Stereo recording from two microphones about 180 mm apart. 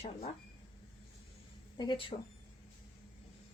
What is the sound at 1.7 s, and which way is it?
Speech, 25° left (ahead or behind).